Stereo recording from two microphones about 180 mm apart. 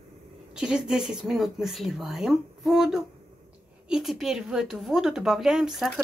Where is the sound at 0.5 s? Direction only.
5° right (ahead or behind).